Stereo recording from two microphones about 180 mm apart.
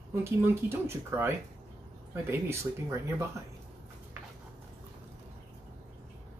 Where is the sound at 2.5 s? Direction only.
15° right (ahead or behind).